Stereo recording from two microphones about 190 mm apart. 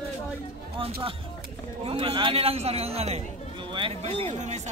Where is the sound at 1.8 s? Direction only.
30° right (ahead or behind).